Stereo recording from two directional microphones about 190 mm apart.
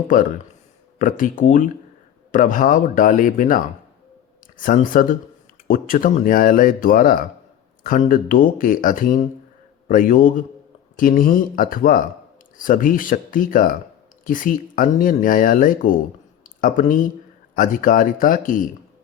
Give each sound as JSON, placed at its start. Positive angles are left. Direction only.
{"t": 0.9, "sound": "speech", "side_deg": 45}
{"t": 16.4, "sound": "a sound", "side_deg": 45}
{"t": 17.6, "sound": "speech", "side_deg": 45}